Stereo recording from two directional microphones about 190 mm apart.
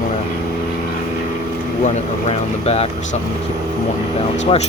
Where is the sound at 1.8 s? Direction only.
35° left (ahead or behind).